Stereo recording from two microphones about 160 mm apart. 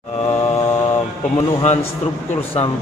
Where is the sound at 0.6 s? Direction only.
15° left (ahead or behind).